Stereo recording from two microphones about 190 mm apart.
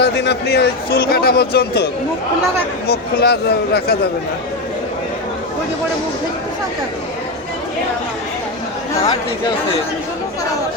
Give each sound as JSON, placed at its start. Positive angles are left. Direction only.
{"t": 0.0, "sound": "speech", "side_deg": 65}